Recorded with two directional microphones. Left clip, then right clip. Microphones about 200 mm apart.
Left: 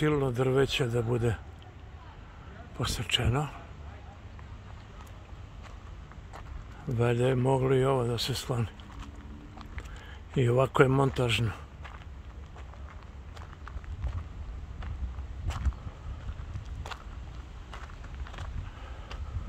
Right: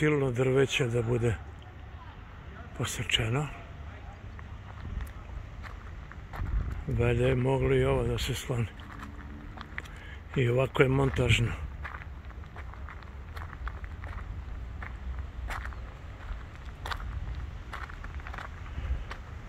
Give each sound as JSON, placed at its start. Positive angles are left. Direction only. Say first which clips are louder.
{"t": 0.0, "sound": "speech", "louder": "right 1 dB", "side_deg": 10}
{"t": 3.0, "sound": "speech", "louder": "right 1 dB", "side_deg": 15}
{"t": 7.0, "sound": "speech", "louder": "even", "side_deg": 15}
{"t": 10.4, "sound": "speech", "louder": "left 2 dB", "side_deg": 20}
{"t": 15.4, "sound": "walk", "louder": "right 4 dB", "side_deg": -10}
{"t": 16.8, "sound": "vehicle", "louder": "right 5 dB", "side_deg": -15}